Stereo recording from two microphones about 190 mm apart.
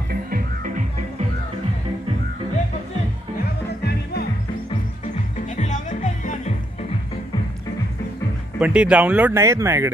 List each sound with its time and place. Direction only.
0.1 s music: 50° right (ahead or behind)
3.8 s music: 55° left (ahead or behind)
5.6 s music: 40° left (ahead or behind)
8.5 s speech: 5° right (ahead or behind)